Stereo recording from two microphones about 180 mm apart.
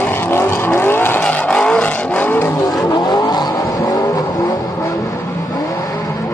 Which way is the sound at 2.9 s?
25° left (ahead or behind).